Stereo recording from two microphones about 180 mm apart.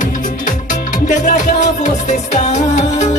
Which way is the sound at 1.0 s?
45° left (ahead or behind).